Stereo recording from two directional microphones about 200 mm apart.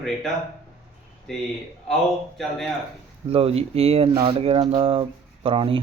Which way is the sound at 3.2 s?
30° right (ahead or behind).